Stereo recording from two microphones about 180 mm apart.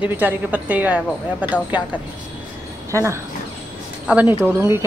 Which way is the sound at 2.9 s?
15° right (ahead or behind).